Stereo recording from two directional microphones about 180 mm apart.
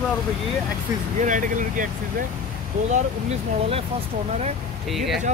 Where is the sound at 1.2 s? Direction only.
45° right (ahead or behind).